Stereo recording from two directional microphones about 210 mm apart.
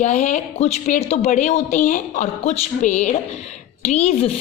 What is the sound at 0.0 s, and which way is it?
A woman's voice, 35° left (ahead or behind).